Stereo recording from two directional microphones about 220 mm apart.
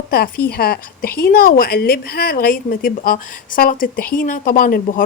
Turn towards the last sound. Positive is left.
turn(degrees=40)  # may be behind; listen again after turning